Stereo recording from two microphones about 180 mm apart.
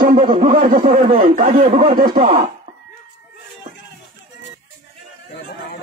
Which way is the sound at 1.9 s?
50° right (ahead or behind).